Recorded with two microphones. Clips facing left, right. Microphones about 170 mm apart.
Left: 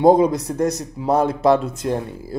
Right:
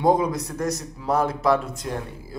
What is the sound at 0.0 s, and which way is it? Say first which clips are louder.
A man's voice: left 7 dB; 25° left (ahead or behind).